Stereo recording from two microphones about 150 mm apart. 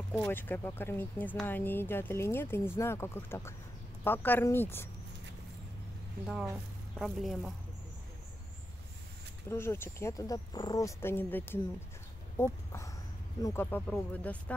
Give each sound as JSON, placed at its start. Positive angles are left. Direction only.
{"t": 0.1, "sound": "speech", "side_deg": 10}
{"t": 7.0, "sound": "a woman's voice", "side_deg": 0}
{"t": 9.5, "sound": "speech", "side_deg": 15}